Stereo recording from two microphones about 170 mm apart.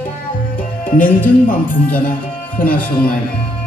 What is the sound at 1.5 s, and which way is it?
Speech, 55° left (ahead or behind).